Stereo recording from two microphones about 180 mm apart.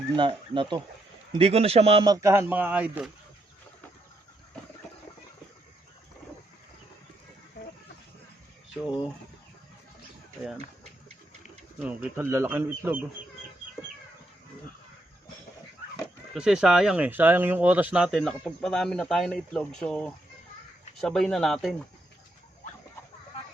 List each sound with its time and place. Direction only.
0.2 s a man's voice: 25° right (ahead or behind)
2.0 s speech: 15° right (ahead or behind)
11.8 s speech: 10° right (ahead or behind)
16.3 s speech: 5° right (ahead or behind)